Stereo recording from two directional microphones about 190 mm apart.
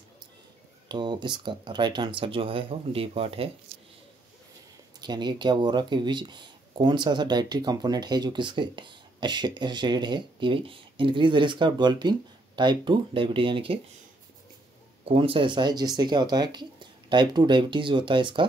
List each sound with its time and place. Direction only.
0.8 s speech: 25° right (ahead or behind)
5.0 s speech: 20° right (ahead or behind)
15.0 s speech: 30° right (ahead or behind)